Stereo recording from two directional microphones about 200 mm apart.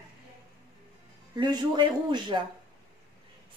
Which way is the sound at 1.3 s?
20° right (ahead or behind).